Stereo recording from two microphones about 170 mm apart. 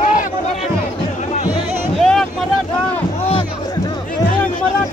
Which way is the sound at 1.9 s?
Centre (ahead or behind).